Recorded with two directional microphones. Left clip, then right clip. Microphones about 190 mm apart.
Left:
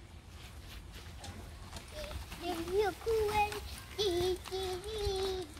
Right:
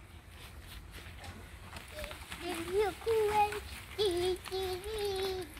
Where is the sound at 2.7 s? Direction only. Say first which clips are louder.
Right 1 dB; 20° left (ahead or behind).